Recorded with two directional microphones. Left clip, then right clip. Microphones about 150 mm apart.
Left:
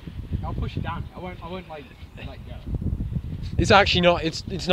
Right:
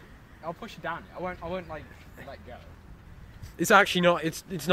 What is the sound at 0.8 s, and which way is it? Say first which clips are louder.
Speech: right 3 dB; 55° right (ahead or behind).